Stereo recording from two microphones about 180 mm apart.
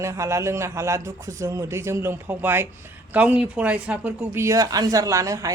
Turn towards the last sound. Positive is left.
turn(degrees=-15)  # may be behind; listen again after turning